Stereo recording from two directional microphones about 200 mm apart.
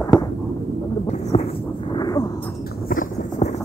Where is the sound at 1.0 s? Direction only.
30° left (ahead or behind).